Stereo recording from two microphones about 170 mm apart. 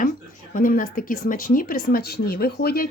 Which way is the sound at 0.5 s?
55° left (ahead or behind).